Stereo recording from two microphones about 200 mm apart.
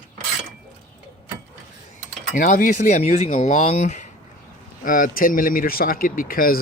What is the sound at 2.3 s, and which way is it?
Speech, 40° left (ahead or behind).